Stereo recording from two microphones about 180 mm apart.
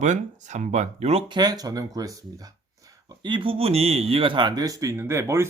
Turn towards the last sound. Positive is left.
turn(degrees=-15)  # may be behind; listen again after turning